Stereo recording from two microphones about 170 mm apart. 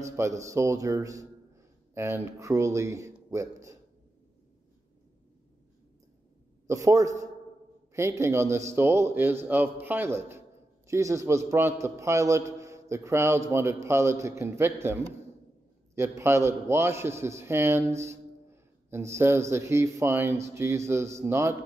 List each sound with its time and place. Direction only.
0.0 s a man's voice: 15° right (ahead or behind)
6.7 s a man's voice: 20° right (ahead or behind)